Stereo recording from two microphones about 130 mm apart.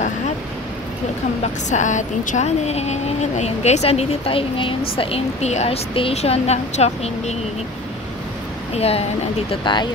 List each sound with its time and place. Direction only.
1.4 s speech: 70° left (ahead or behind)
8.7 s speech: 55° left (ahead or behind)